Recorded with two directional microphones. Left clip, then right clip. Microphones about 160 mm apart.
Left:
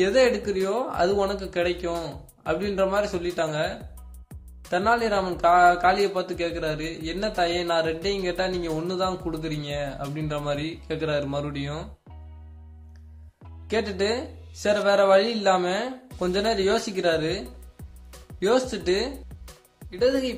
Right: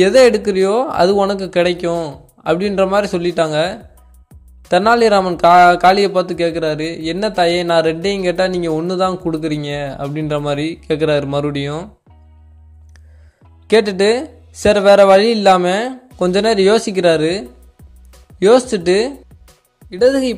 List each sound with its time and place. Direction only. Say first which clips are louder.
0.0 s a man's voice: right 11 dB; 55° right (ahead or behind)
13.7 s a man's voice: right 13 dB; 50° right (ahead or behind)
19.4 s music: even; centre (ahead or behind)
19.9 s a man's voice: right 10 dB; 50° right (ahead or behind)